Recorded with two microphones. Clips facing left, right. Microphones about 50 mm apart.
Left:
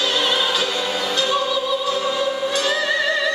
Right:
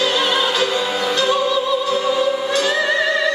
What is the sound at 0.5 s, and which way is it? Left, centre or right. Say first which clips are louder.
Music: right 3 dB; right.